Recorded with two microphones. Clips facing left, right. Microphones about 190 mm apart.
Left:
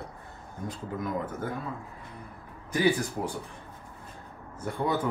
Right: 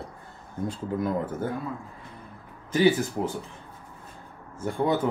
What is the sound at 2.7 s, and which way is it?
Speech, 25° right (ahead or behind).